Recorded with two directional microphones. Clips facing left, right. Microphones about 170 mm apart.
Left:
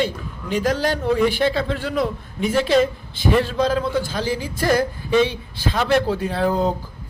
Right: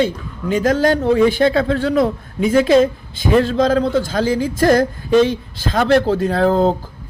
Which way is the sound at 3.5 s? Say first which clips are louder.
Right 5 dB; 45° right (ahead or behind).